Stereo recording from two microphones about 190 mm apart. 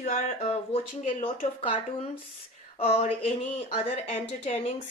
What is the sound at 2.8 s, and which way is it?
Speech, 35° left (ahead or behind).